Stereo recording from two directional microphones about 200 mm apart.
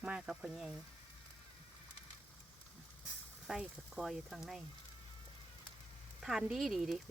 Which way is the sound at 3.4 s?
5° right (ahead or behind).